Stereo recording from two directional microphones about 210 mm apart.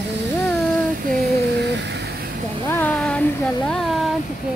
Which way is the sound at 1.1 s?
50° right (ahead or behind).